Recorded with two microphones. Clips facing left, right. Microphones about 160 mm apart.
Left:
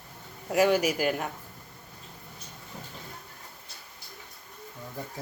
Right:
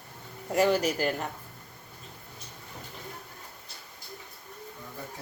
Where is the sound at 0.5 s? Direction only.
10° left (ahead or behind).